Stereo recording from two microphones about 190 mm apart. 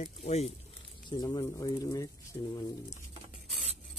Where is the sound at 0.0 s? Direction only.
35° left (ahead or behind).